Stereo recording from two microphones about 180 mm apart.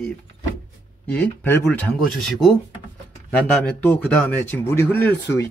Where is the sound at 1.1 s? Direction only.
10° left (ahead or behind).